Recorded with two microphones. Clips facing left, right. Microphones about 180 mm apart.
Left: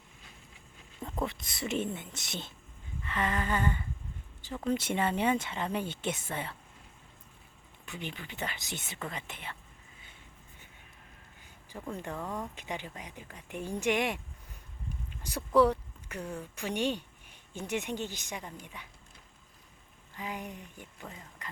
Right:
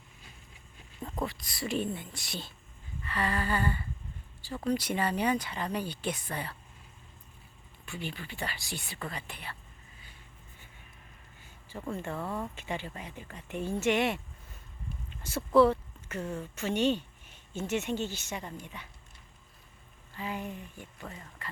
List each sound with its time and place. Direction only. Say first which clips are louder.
1.2 s speech: even; 20° left (ahead or behind)
7.9 s speech: right 2 dB; 20° left (ahead or behind)
11.9 s a woman's voice: right 2 dB; 15° left (ahead or behind)
12.2 s speech: right 1 dB; 5° right (ahead or behind)
12.5 s a woman's voice: right 2 dB; 15° left (ahead or behind)
15.2 s speech: right 2 dB; 15° left (ahead or behind)
20.1 s a woman's voice: right 2 dB; 15° left (ahead or behind)